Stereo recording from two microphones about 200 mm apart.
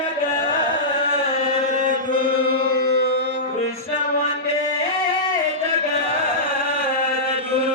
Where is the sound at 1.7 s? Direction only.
40° right (ahead or behind).